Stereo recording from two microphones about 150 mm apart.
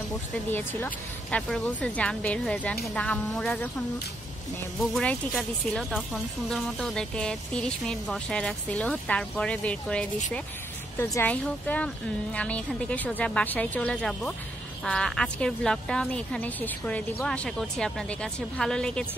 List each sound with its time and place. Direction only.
0.5 s speech: 10° left (ahead or behind)
4.9 s speech: 5° left (ahead or behind)